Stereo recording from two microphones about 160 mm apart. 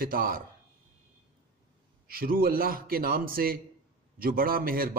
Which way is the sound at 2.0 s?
65° right (ahead or behind).